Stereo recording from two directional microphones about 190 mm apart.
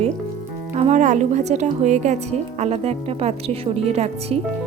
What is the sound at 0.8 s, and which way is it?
Speech, 40° right (ahead or behind).